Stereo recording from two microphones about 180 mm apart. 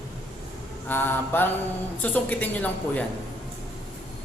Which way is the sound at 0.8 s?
10° left (ahead or behind).